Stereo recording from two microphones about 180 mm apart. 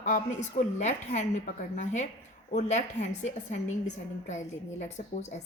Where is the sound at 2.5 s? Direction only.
40° left (ahead or behind).